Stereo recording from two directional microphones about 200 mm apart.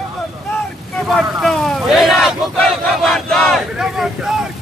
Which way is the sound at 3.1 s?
5° left (ahead or behind).